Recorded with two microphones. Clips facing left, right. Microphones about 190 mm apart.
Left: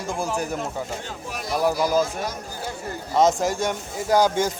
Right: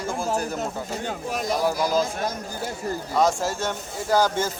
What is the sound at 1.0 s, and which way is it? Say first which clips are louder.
Speech: right 6 dB; 45° right (ahead or behind).